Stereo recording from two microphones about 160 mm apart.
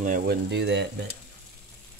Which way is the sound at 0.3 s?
90° right.